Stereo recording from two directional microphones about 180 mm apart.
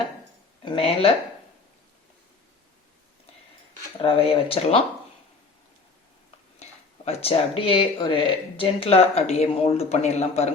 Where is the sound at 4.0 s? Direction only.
30° left (ahead or behind).